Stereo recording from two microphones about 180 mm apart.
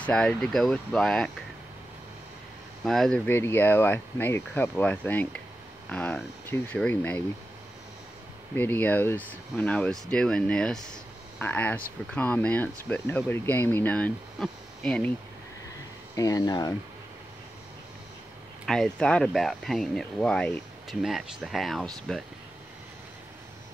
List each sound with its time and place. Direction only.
0.0 s speech: 5° left (ahead or behind)
2.8 s speech: centre (ahead or behind)
3.3 s speech: 10° left (ahead or behind)
8.5 s speech: 10° left (ahead or behind)
16.2 s speech: 20° left (ahead or behind)
18.7 s speech: 5° left (ahead or behind)